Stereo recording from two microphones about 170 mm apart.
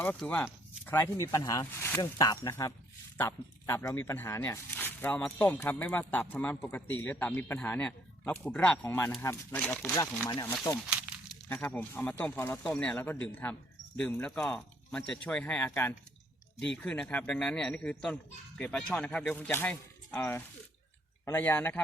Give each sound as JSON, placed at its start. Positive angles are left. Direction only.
{"t": 0.0, "sound": "speech", "side_deg": 10}
{"t": 10.8, "sound": "a sound", "side_deg": -5}
{"t": 11.4, "sound": "a man's voice", "side_deg": 10}